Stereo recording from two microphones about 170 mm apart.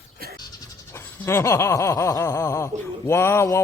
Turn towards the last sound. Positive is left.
turn(degrees=15)  # may be behind; listen again after turning